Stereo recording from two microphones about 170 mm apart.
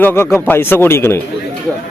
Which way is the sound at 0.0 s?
15° left (ahead or behind).